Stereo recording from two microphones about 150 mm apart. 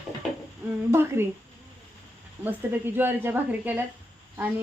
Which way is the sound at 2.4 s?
15° right (ahead or behind).